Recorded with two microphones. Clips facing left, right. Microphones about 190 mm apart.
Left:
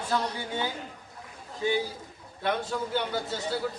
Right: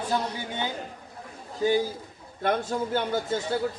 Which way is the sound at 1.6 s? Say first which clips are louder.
Right 4 dB; 40° right (ahead or behind).